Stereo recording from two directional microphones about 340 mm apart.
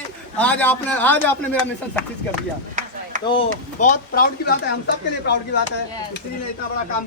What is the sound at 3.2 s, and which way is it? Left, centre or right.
A man's voice, centre.